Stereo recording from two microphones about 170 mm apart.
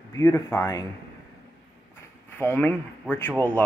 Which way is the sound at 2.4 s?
10° left (ahead or behind).